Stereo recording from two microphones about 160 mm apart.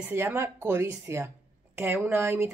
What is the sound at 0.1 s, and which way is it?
Speech, 15° right (ahead or behind).